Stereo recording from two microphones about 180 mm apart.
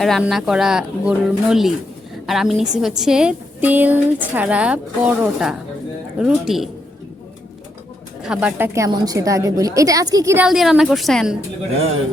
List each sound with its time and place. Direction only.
0.0 s speech: centre (ahead or behind)
8.2 s speech: 5° right (ahead or behind)
10.4 s speech: centre (ahead or behind)